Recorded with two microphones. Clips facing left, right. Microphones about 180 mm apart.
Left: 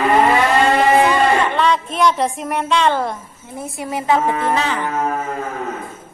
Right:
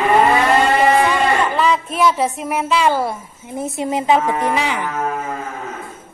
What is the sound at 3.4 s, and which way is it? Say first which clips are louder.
Speech: right 5 dB; 20° right (ahead or behind).